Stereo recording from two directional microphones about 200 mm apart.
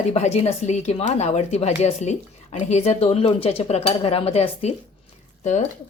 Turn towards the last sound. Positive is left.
turn(degrees=35)  # may be behind; listen again after turning